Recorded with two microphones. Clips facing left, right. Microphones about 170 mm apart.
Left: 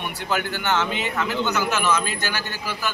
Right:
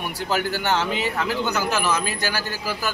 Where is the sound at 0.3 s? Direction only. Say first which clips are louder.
Right 1 dB; 40° right (ahead or behind).